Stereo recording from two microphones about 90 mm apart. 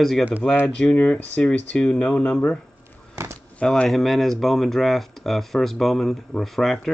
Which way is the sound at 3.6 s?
5° left (ahead or behind).